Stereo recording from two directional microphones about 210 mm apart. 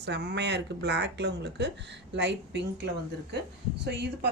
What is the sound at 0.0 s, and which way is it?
A woman's voice, 55° right (ahead or behind).